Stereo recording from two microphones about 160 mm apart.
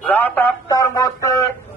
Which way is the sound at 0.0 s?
10° left (ahead or behind).